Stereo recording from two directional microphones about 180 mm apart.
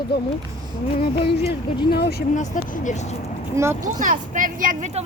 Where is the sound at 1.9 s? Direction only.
65° left (ahead or behind).